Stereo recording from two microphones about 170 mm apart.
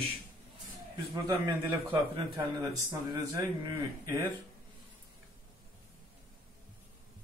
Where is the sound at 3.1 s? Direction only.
20° right (ahead or behind).